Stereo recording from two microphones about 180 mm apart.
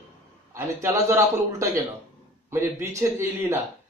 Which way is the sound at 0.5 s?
15° right (ahead or behind).